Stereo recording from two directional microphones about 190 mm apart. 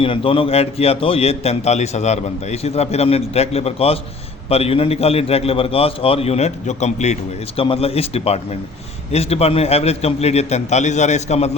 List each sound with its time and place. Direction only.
0.0 s a man's voice: 30° left (ahead or behind)